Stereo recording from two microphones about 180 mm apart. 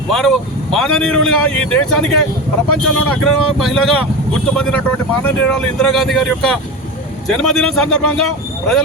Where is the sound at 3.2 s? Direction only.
Centre (ahead or behind).